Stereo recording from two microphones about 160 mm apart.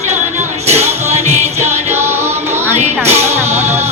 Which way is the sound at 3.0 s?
45° right (ahead or behind).